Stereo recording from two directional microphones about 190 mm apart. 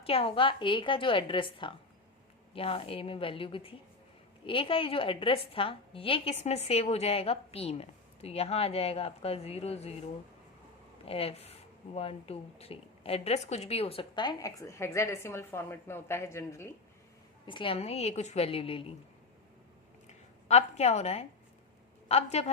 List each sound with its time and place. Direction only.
0.0 s a woman's voice: 30° left (ahead or behind); by 16.7 s 15° left (ahead or behind)
17.4 s a woman's voice: 25° left (ahead or behind)
20.1 s a sound: 35° left (ahead or behind)
22.1 s a woman's voice: 35° left (ahead or behind)